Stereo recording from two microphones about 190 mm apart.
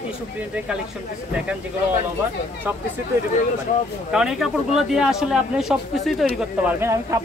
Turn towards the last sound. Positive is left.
turn(degrees=-15)  # may be behind; listen again after turning